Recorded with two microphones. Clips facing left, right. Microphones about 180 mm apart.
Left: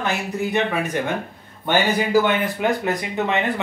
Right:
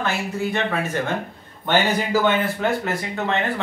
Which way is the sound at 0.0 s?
15° left (ahead or behind).